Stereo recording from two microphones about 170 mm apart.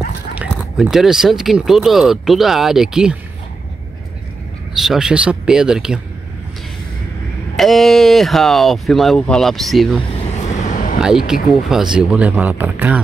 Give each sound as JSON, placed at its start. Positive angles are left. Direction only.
{"t": 0.3, "sound": "speech", "side_deg": -5}
{"t": 4.7, "sound": "speech", "side_deg": -5}
{"t": 7.5, "sound": "speech", "side_deg": 0}
{"t": 10.1, "sound": "vehicle", "side_deg": 40}
{"t": 11.0, "sound": "speech", "side_deg": -5}